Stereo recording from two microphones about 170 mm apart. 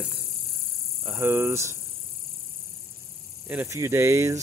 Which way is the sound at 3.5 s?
15° right (ahead or behind).